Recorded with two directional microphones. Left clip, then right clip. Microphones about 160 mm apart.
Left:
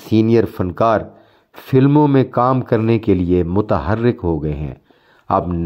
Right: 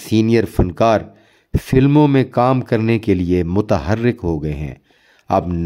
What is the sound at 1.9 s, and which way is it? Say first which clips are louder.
Speech: right 1 dB; 45° right (ahead or behind).